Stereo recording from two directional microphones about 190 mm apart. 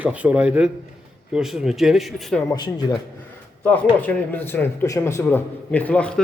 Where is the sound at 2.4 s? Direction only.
20° left (ahead or behind).